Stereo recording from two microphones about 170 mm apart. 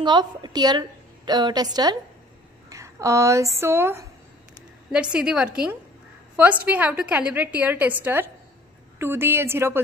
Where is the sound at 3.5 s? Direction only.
15° right (ahead or behind).